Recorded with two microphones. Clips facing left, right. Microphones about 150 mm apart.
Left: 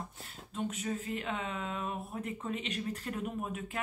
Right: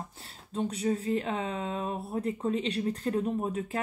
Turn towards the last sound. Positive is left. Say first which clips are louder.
# right 7 dB
turn(degrees=-35)  # may be behind; listen again after turning